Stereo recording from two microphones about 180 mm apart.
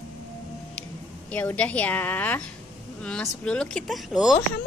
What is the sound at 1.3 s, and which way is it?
A woman's voice, 10° left (ahead or behind).